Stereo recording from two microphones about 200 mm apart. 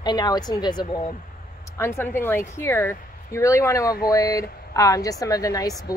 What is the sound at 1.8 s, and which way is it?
A woman's voice, 10° left (ahead or behind).